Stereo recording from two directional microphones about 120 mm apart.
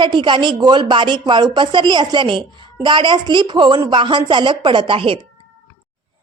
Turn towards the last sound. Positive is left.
turn(degrees=-45)  # may be behind; listen again after turning